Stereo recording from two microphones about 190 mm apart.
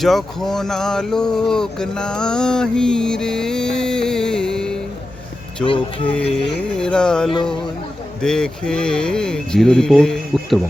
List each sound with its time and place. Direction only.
0.0 s speech: centre (ahead or behind)
6.1 s speech: 5° left (ahead or behind)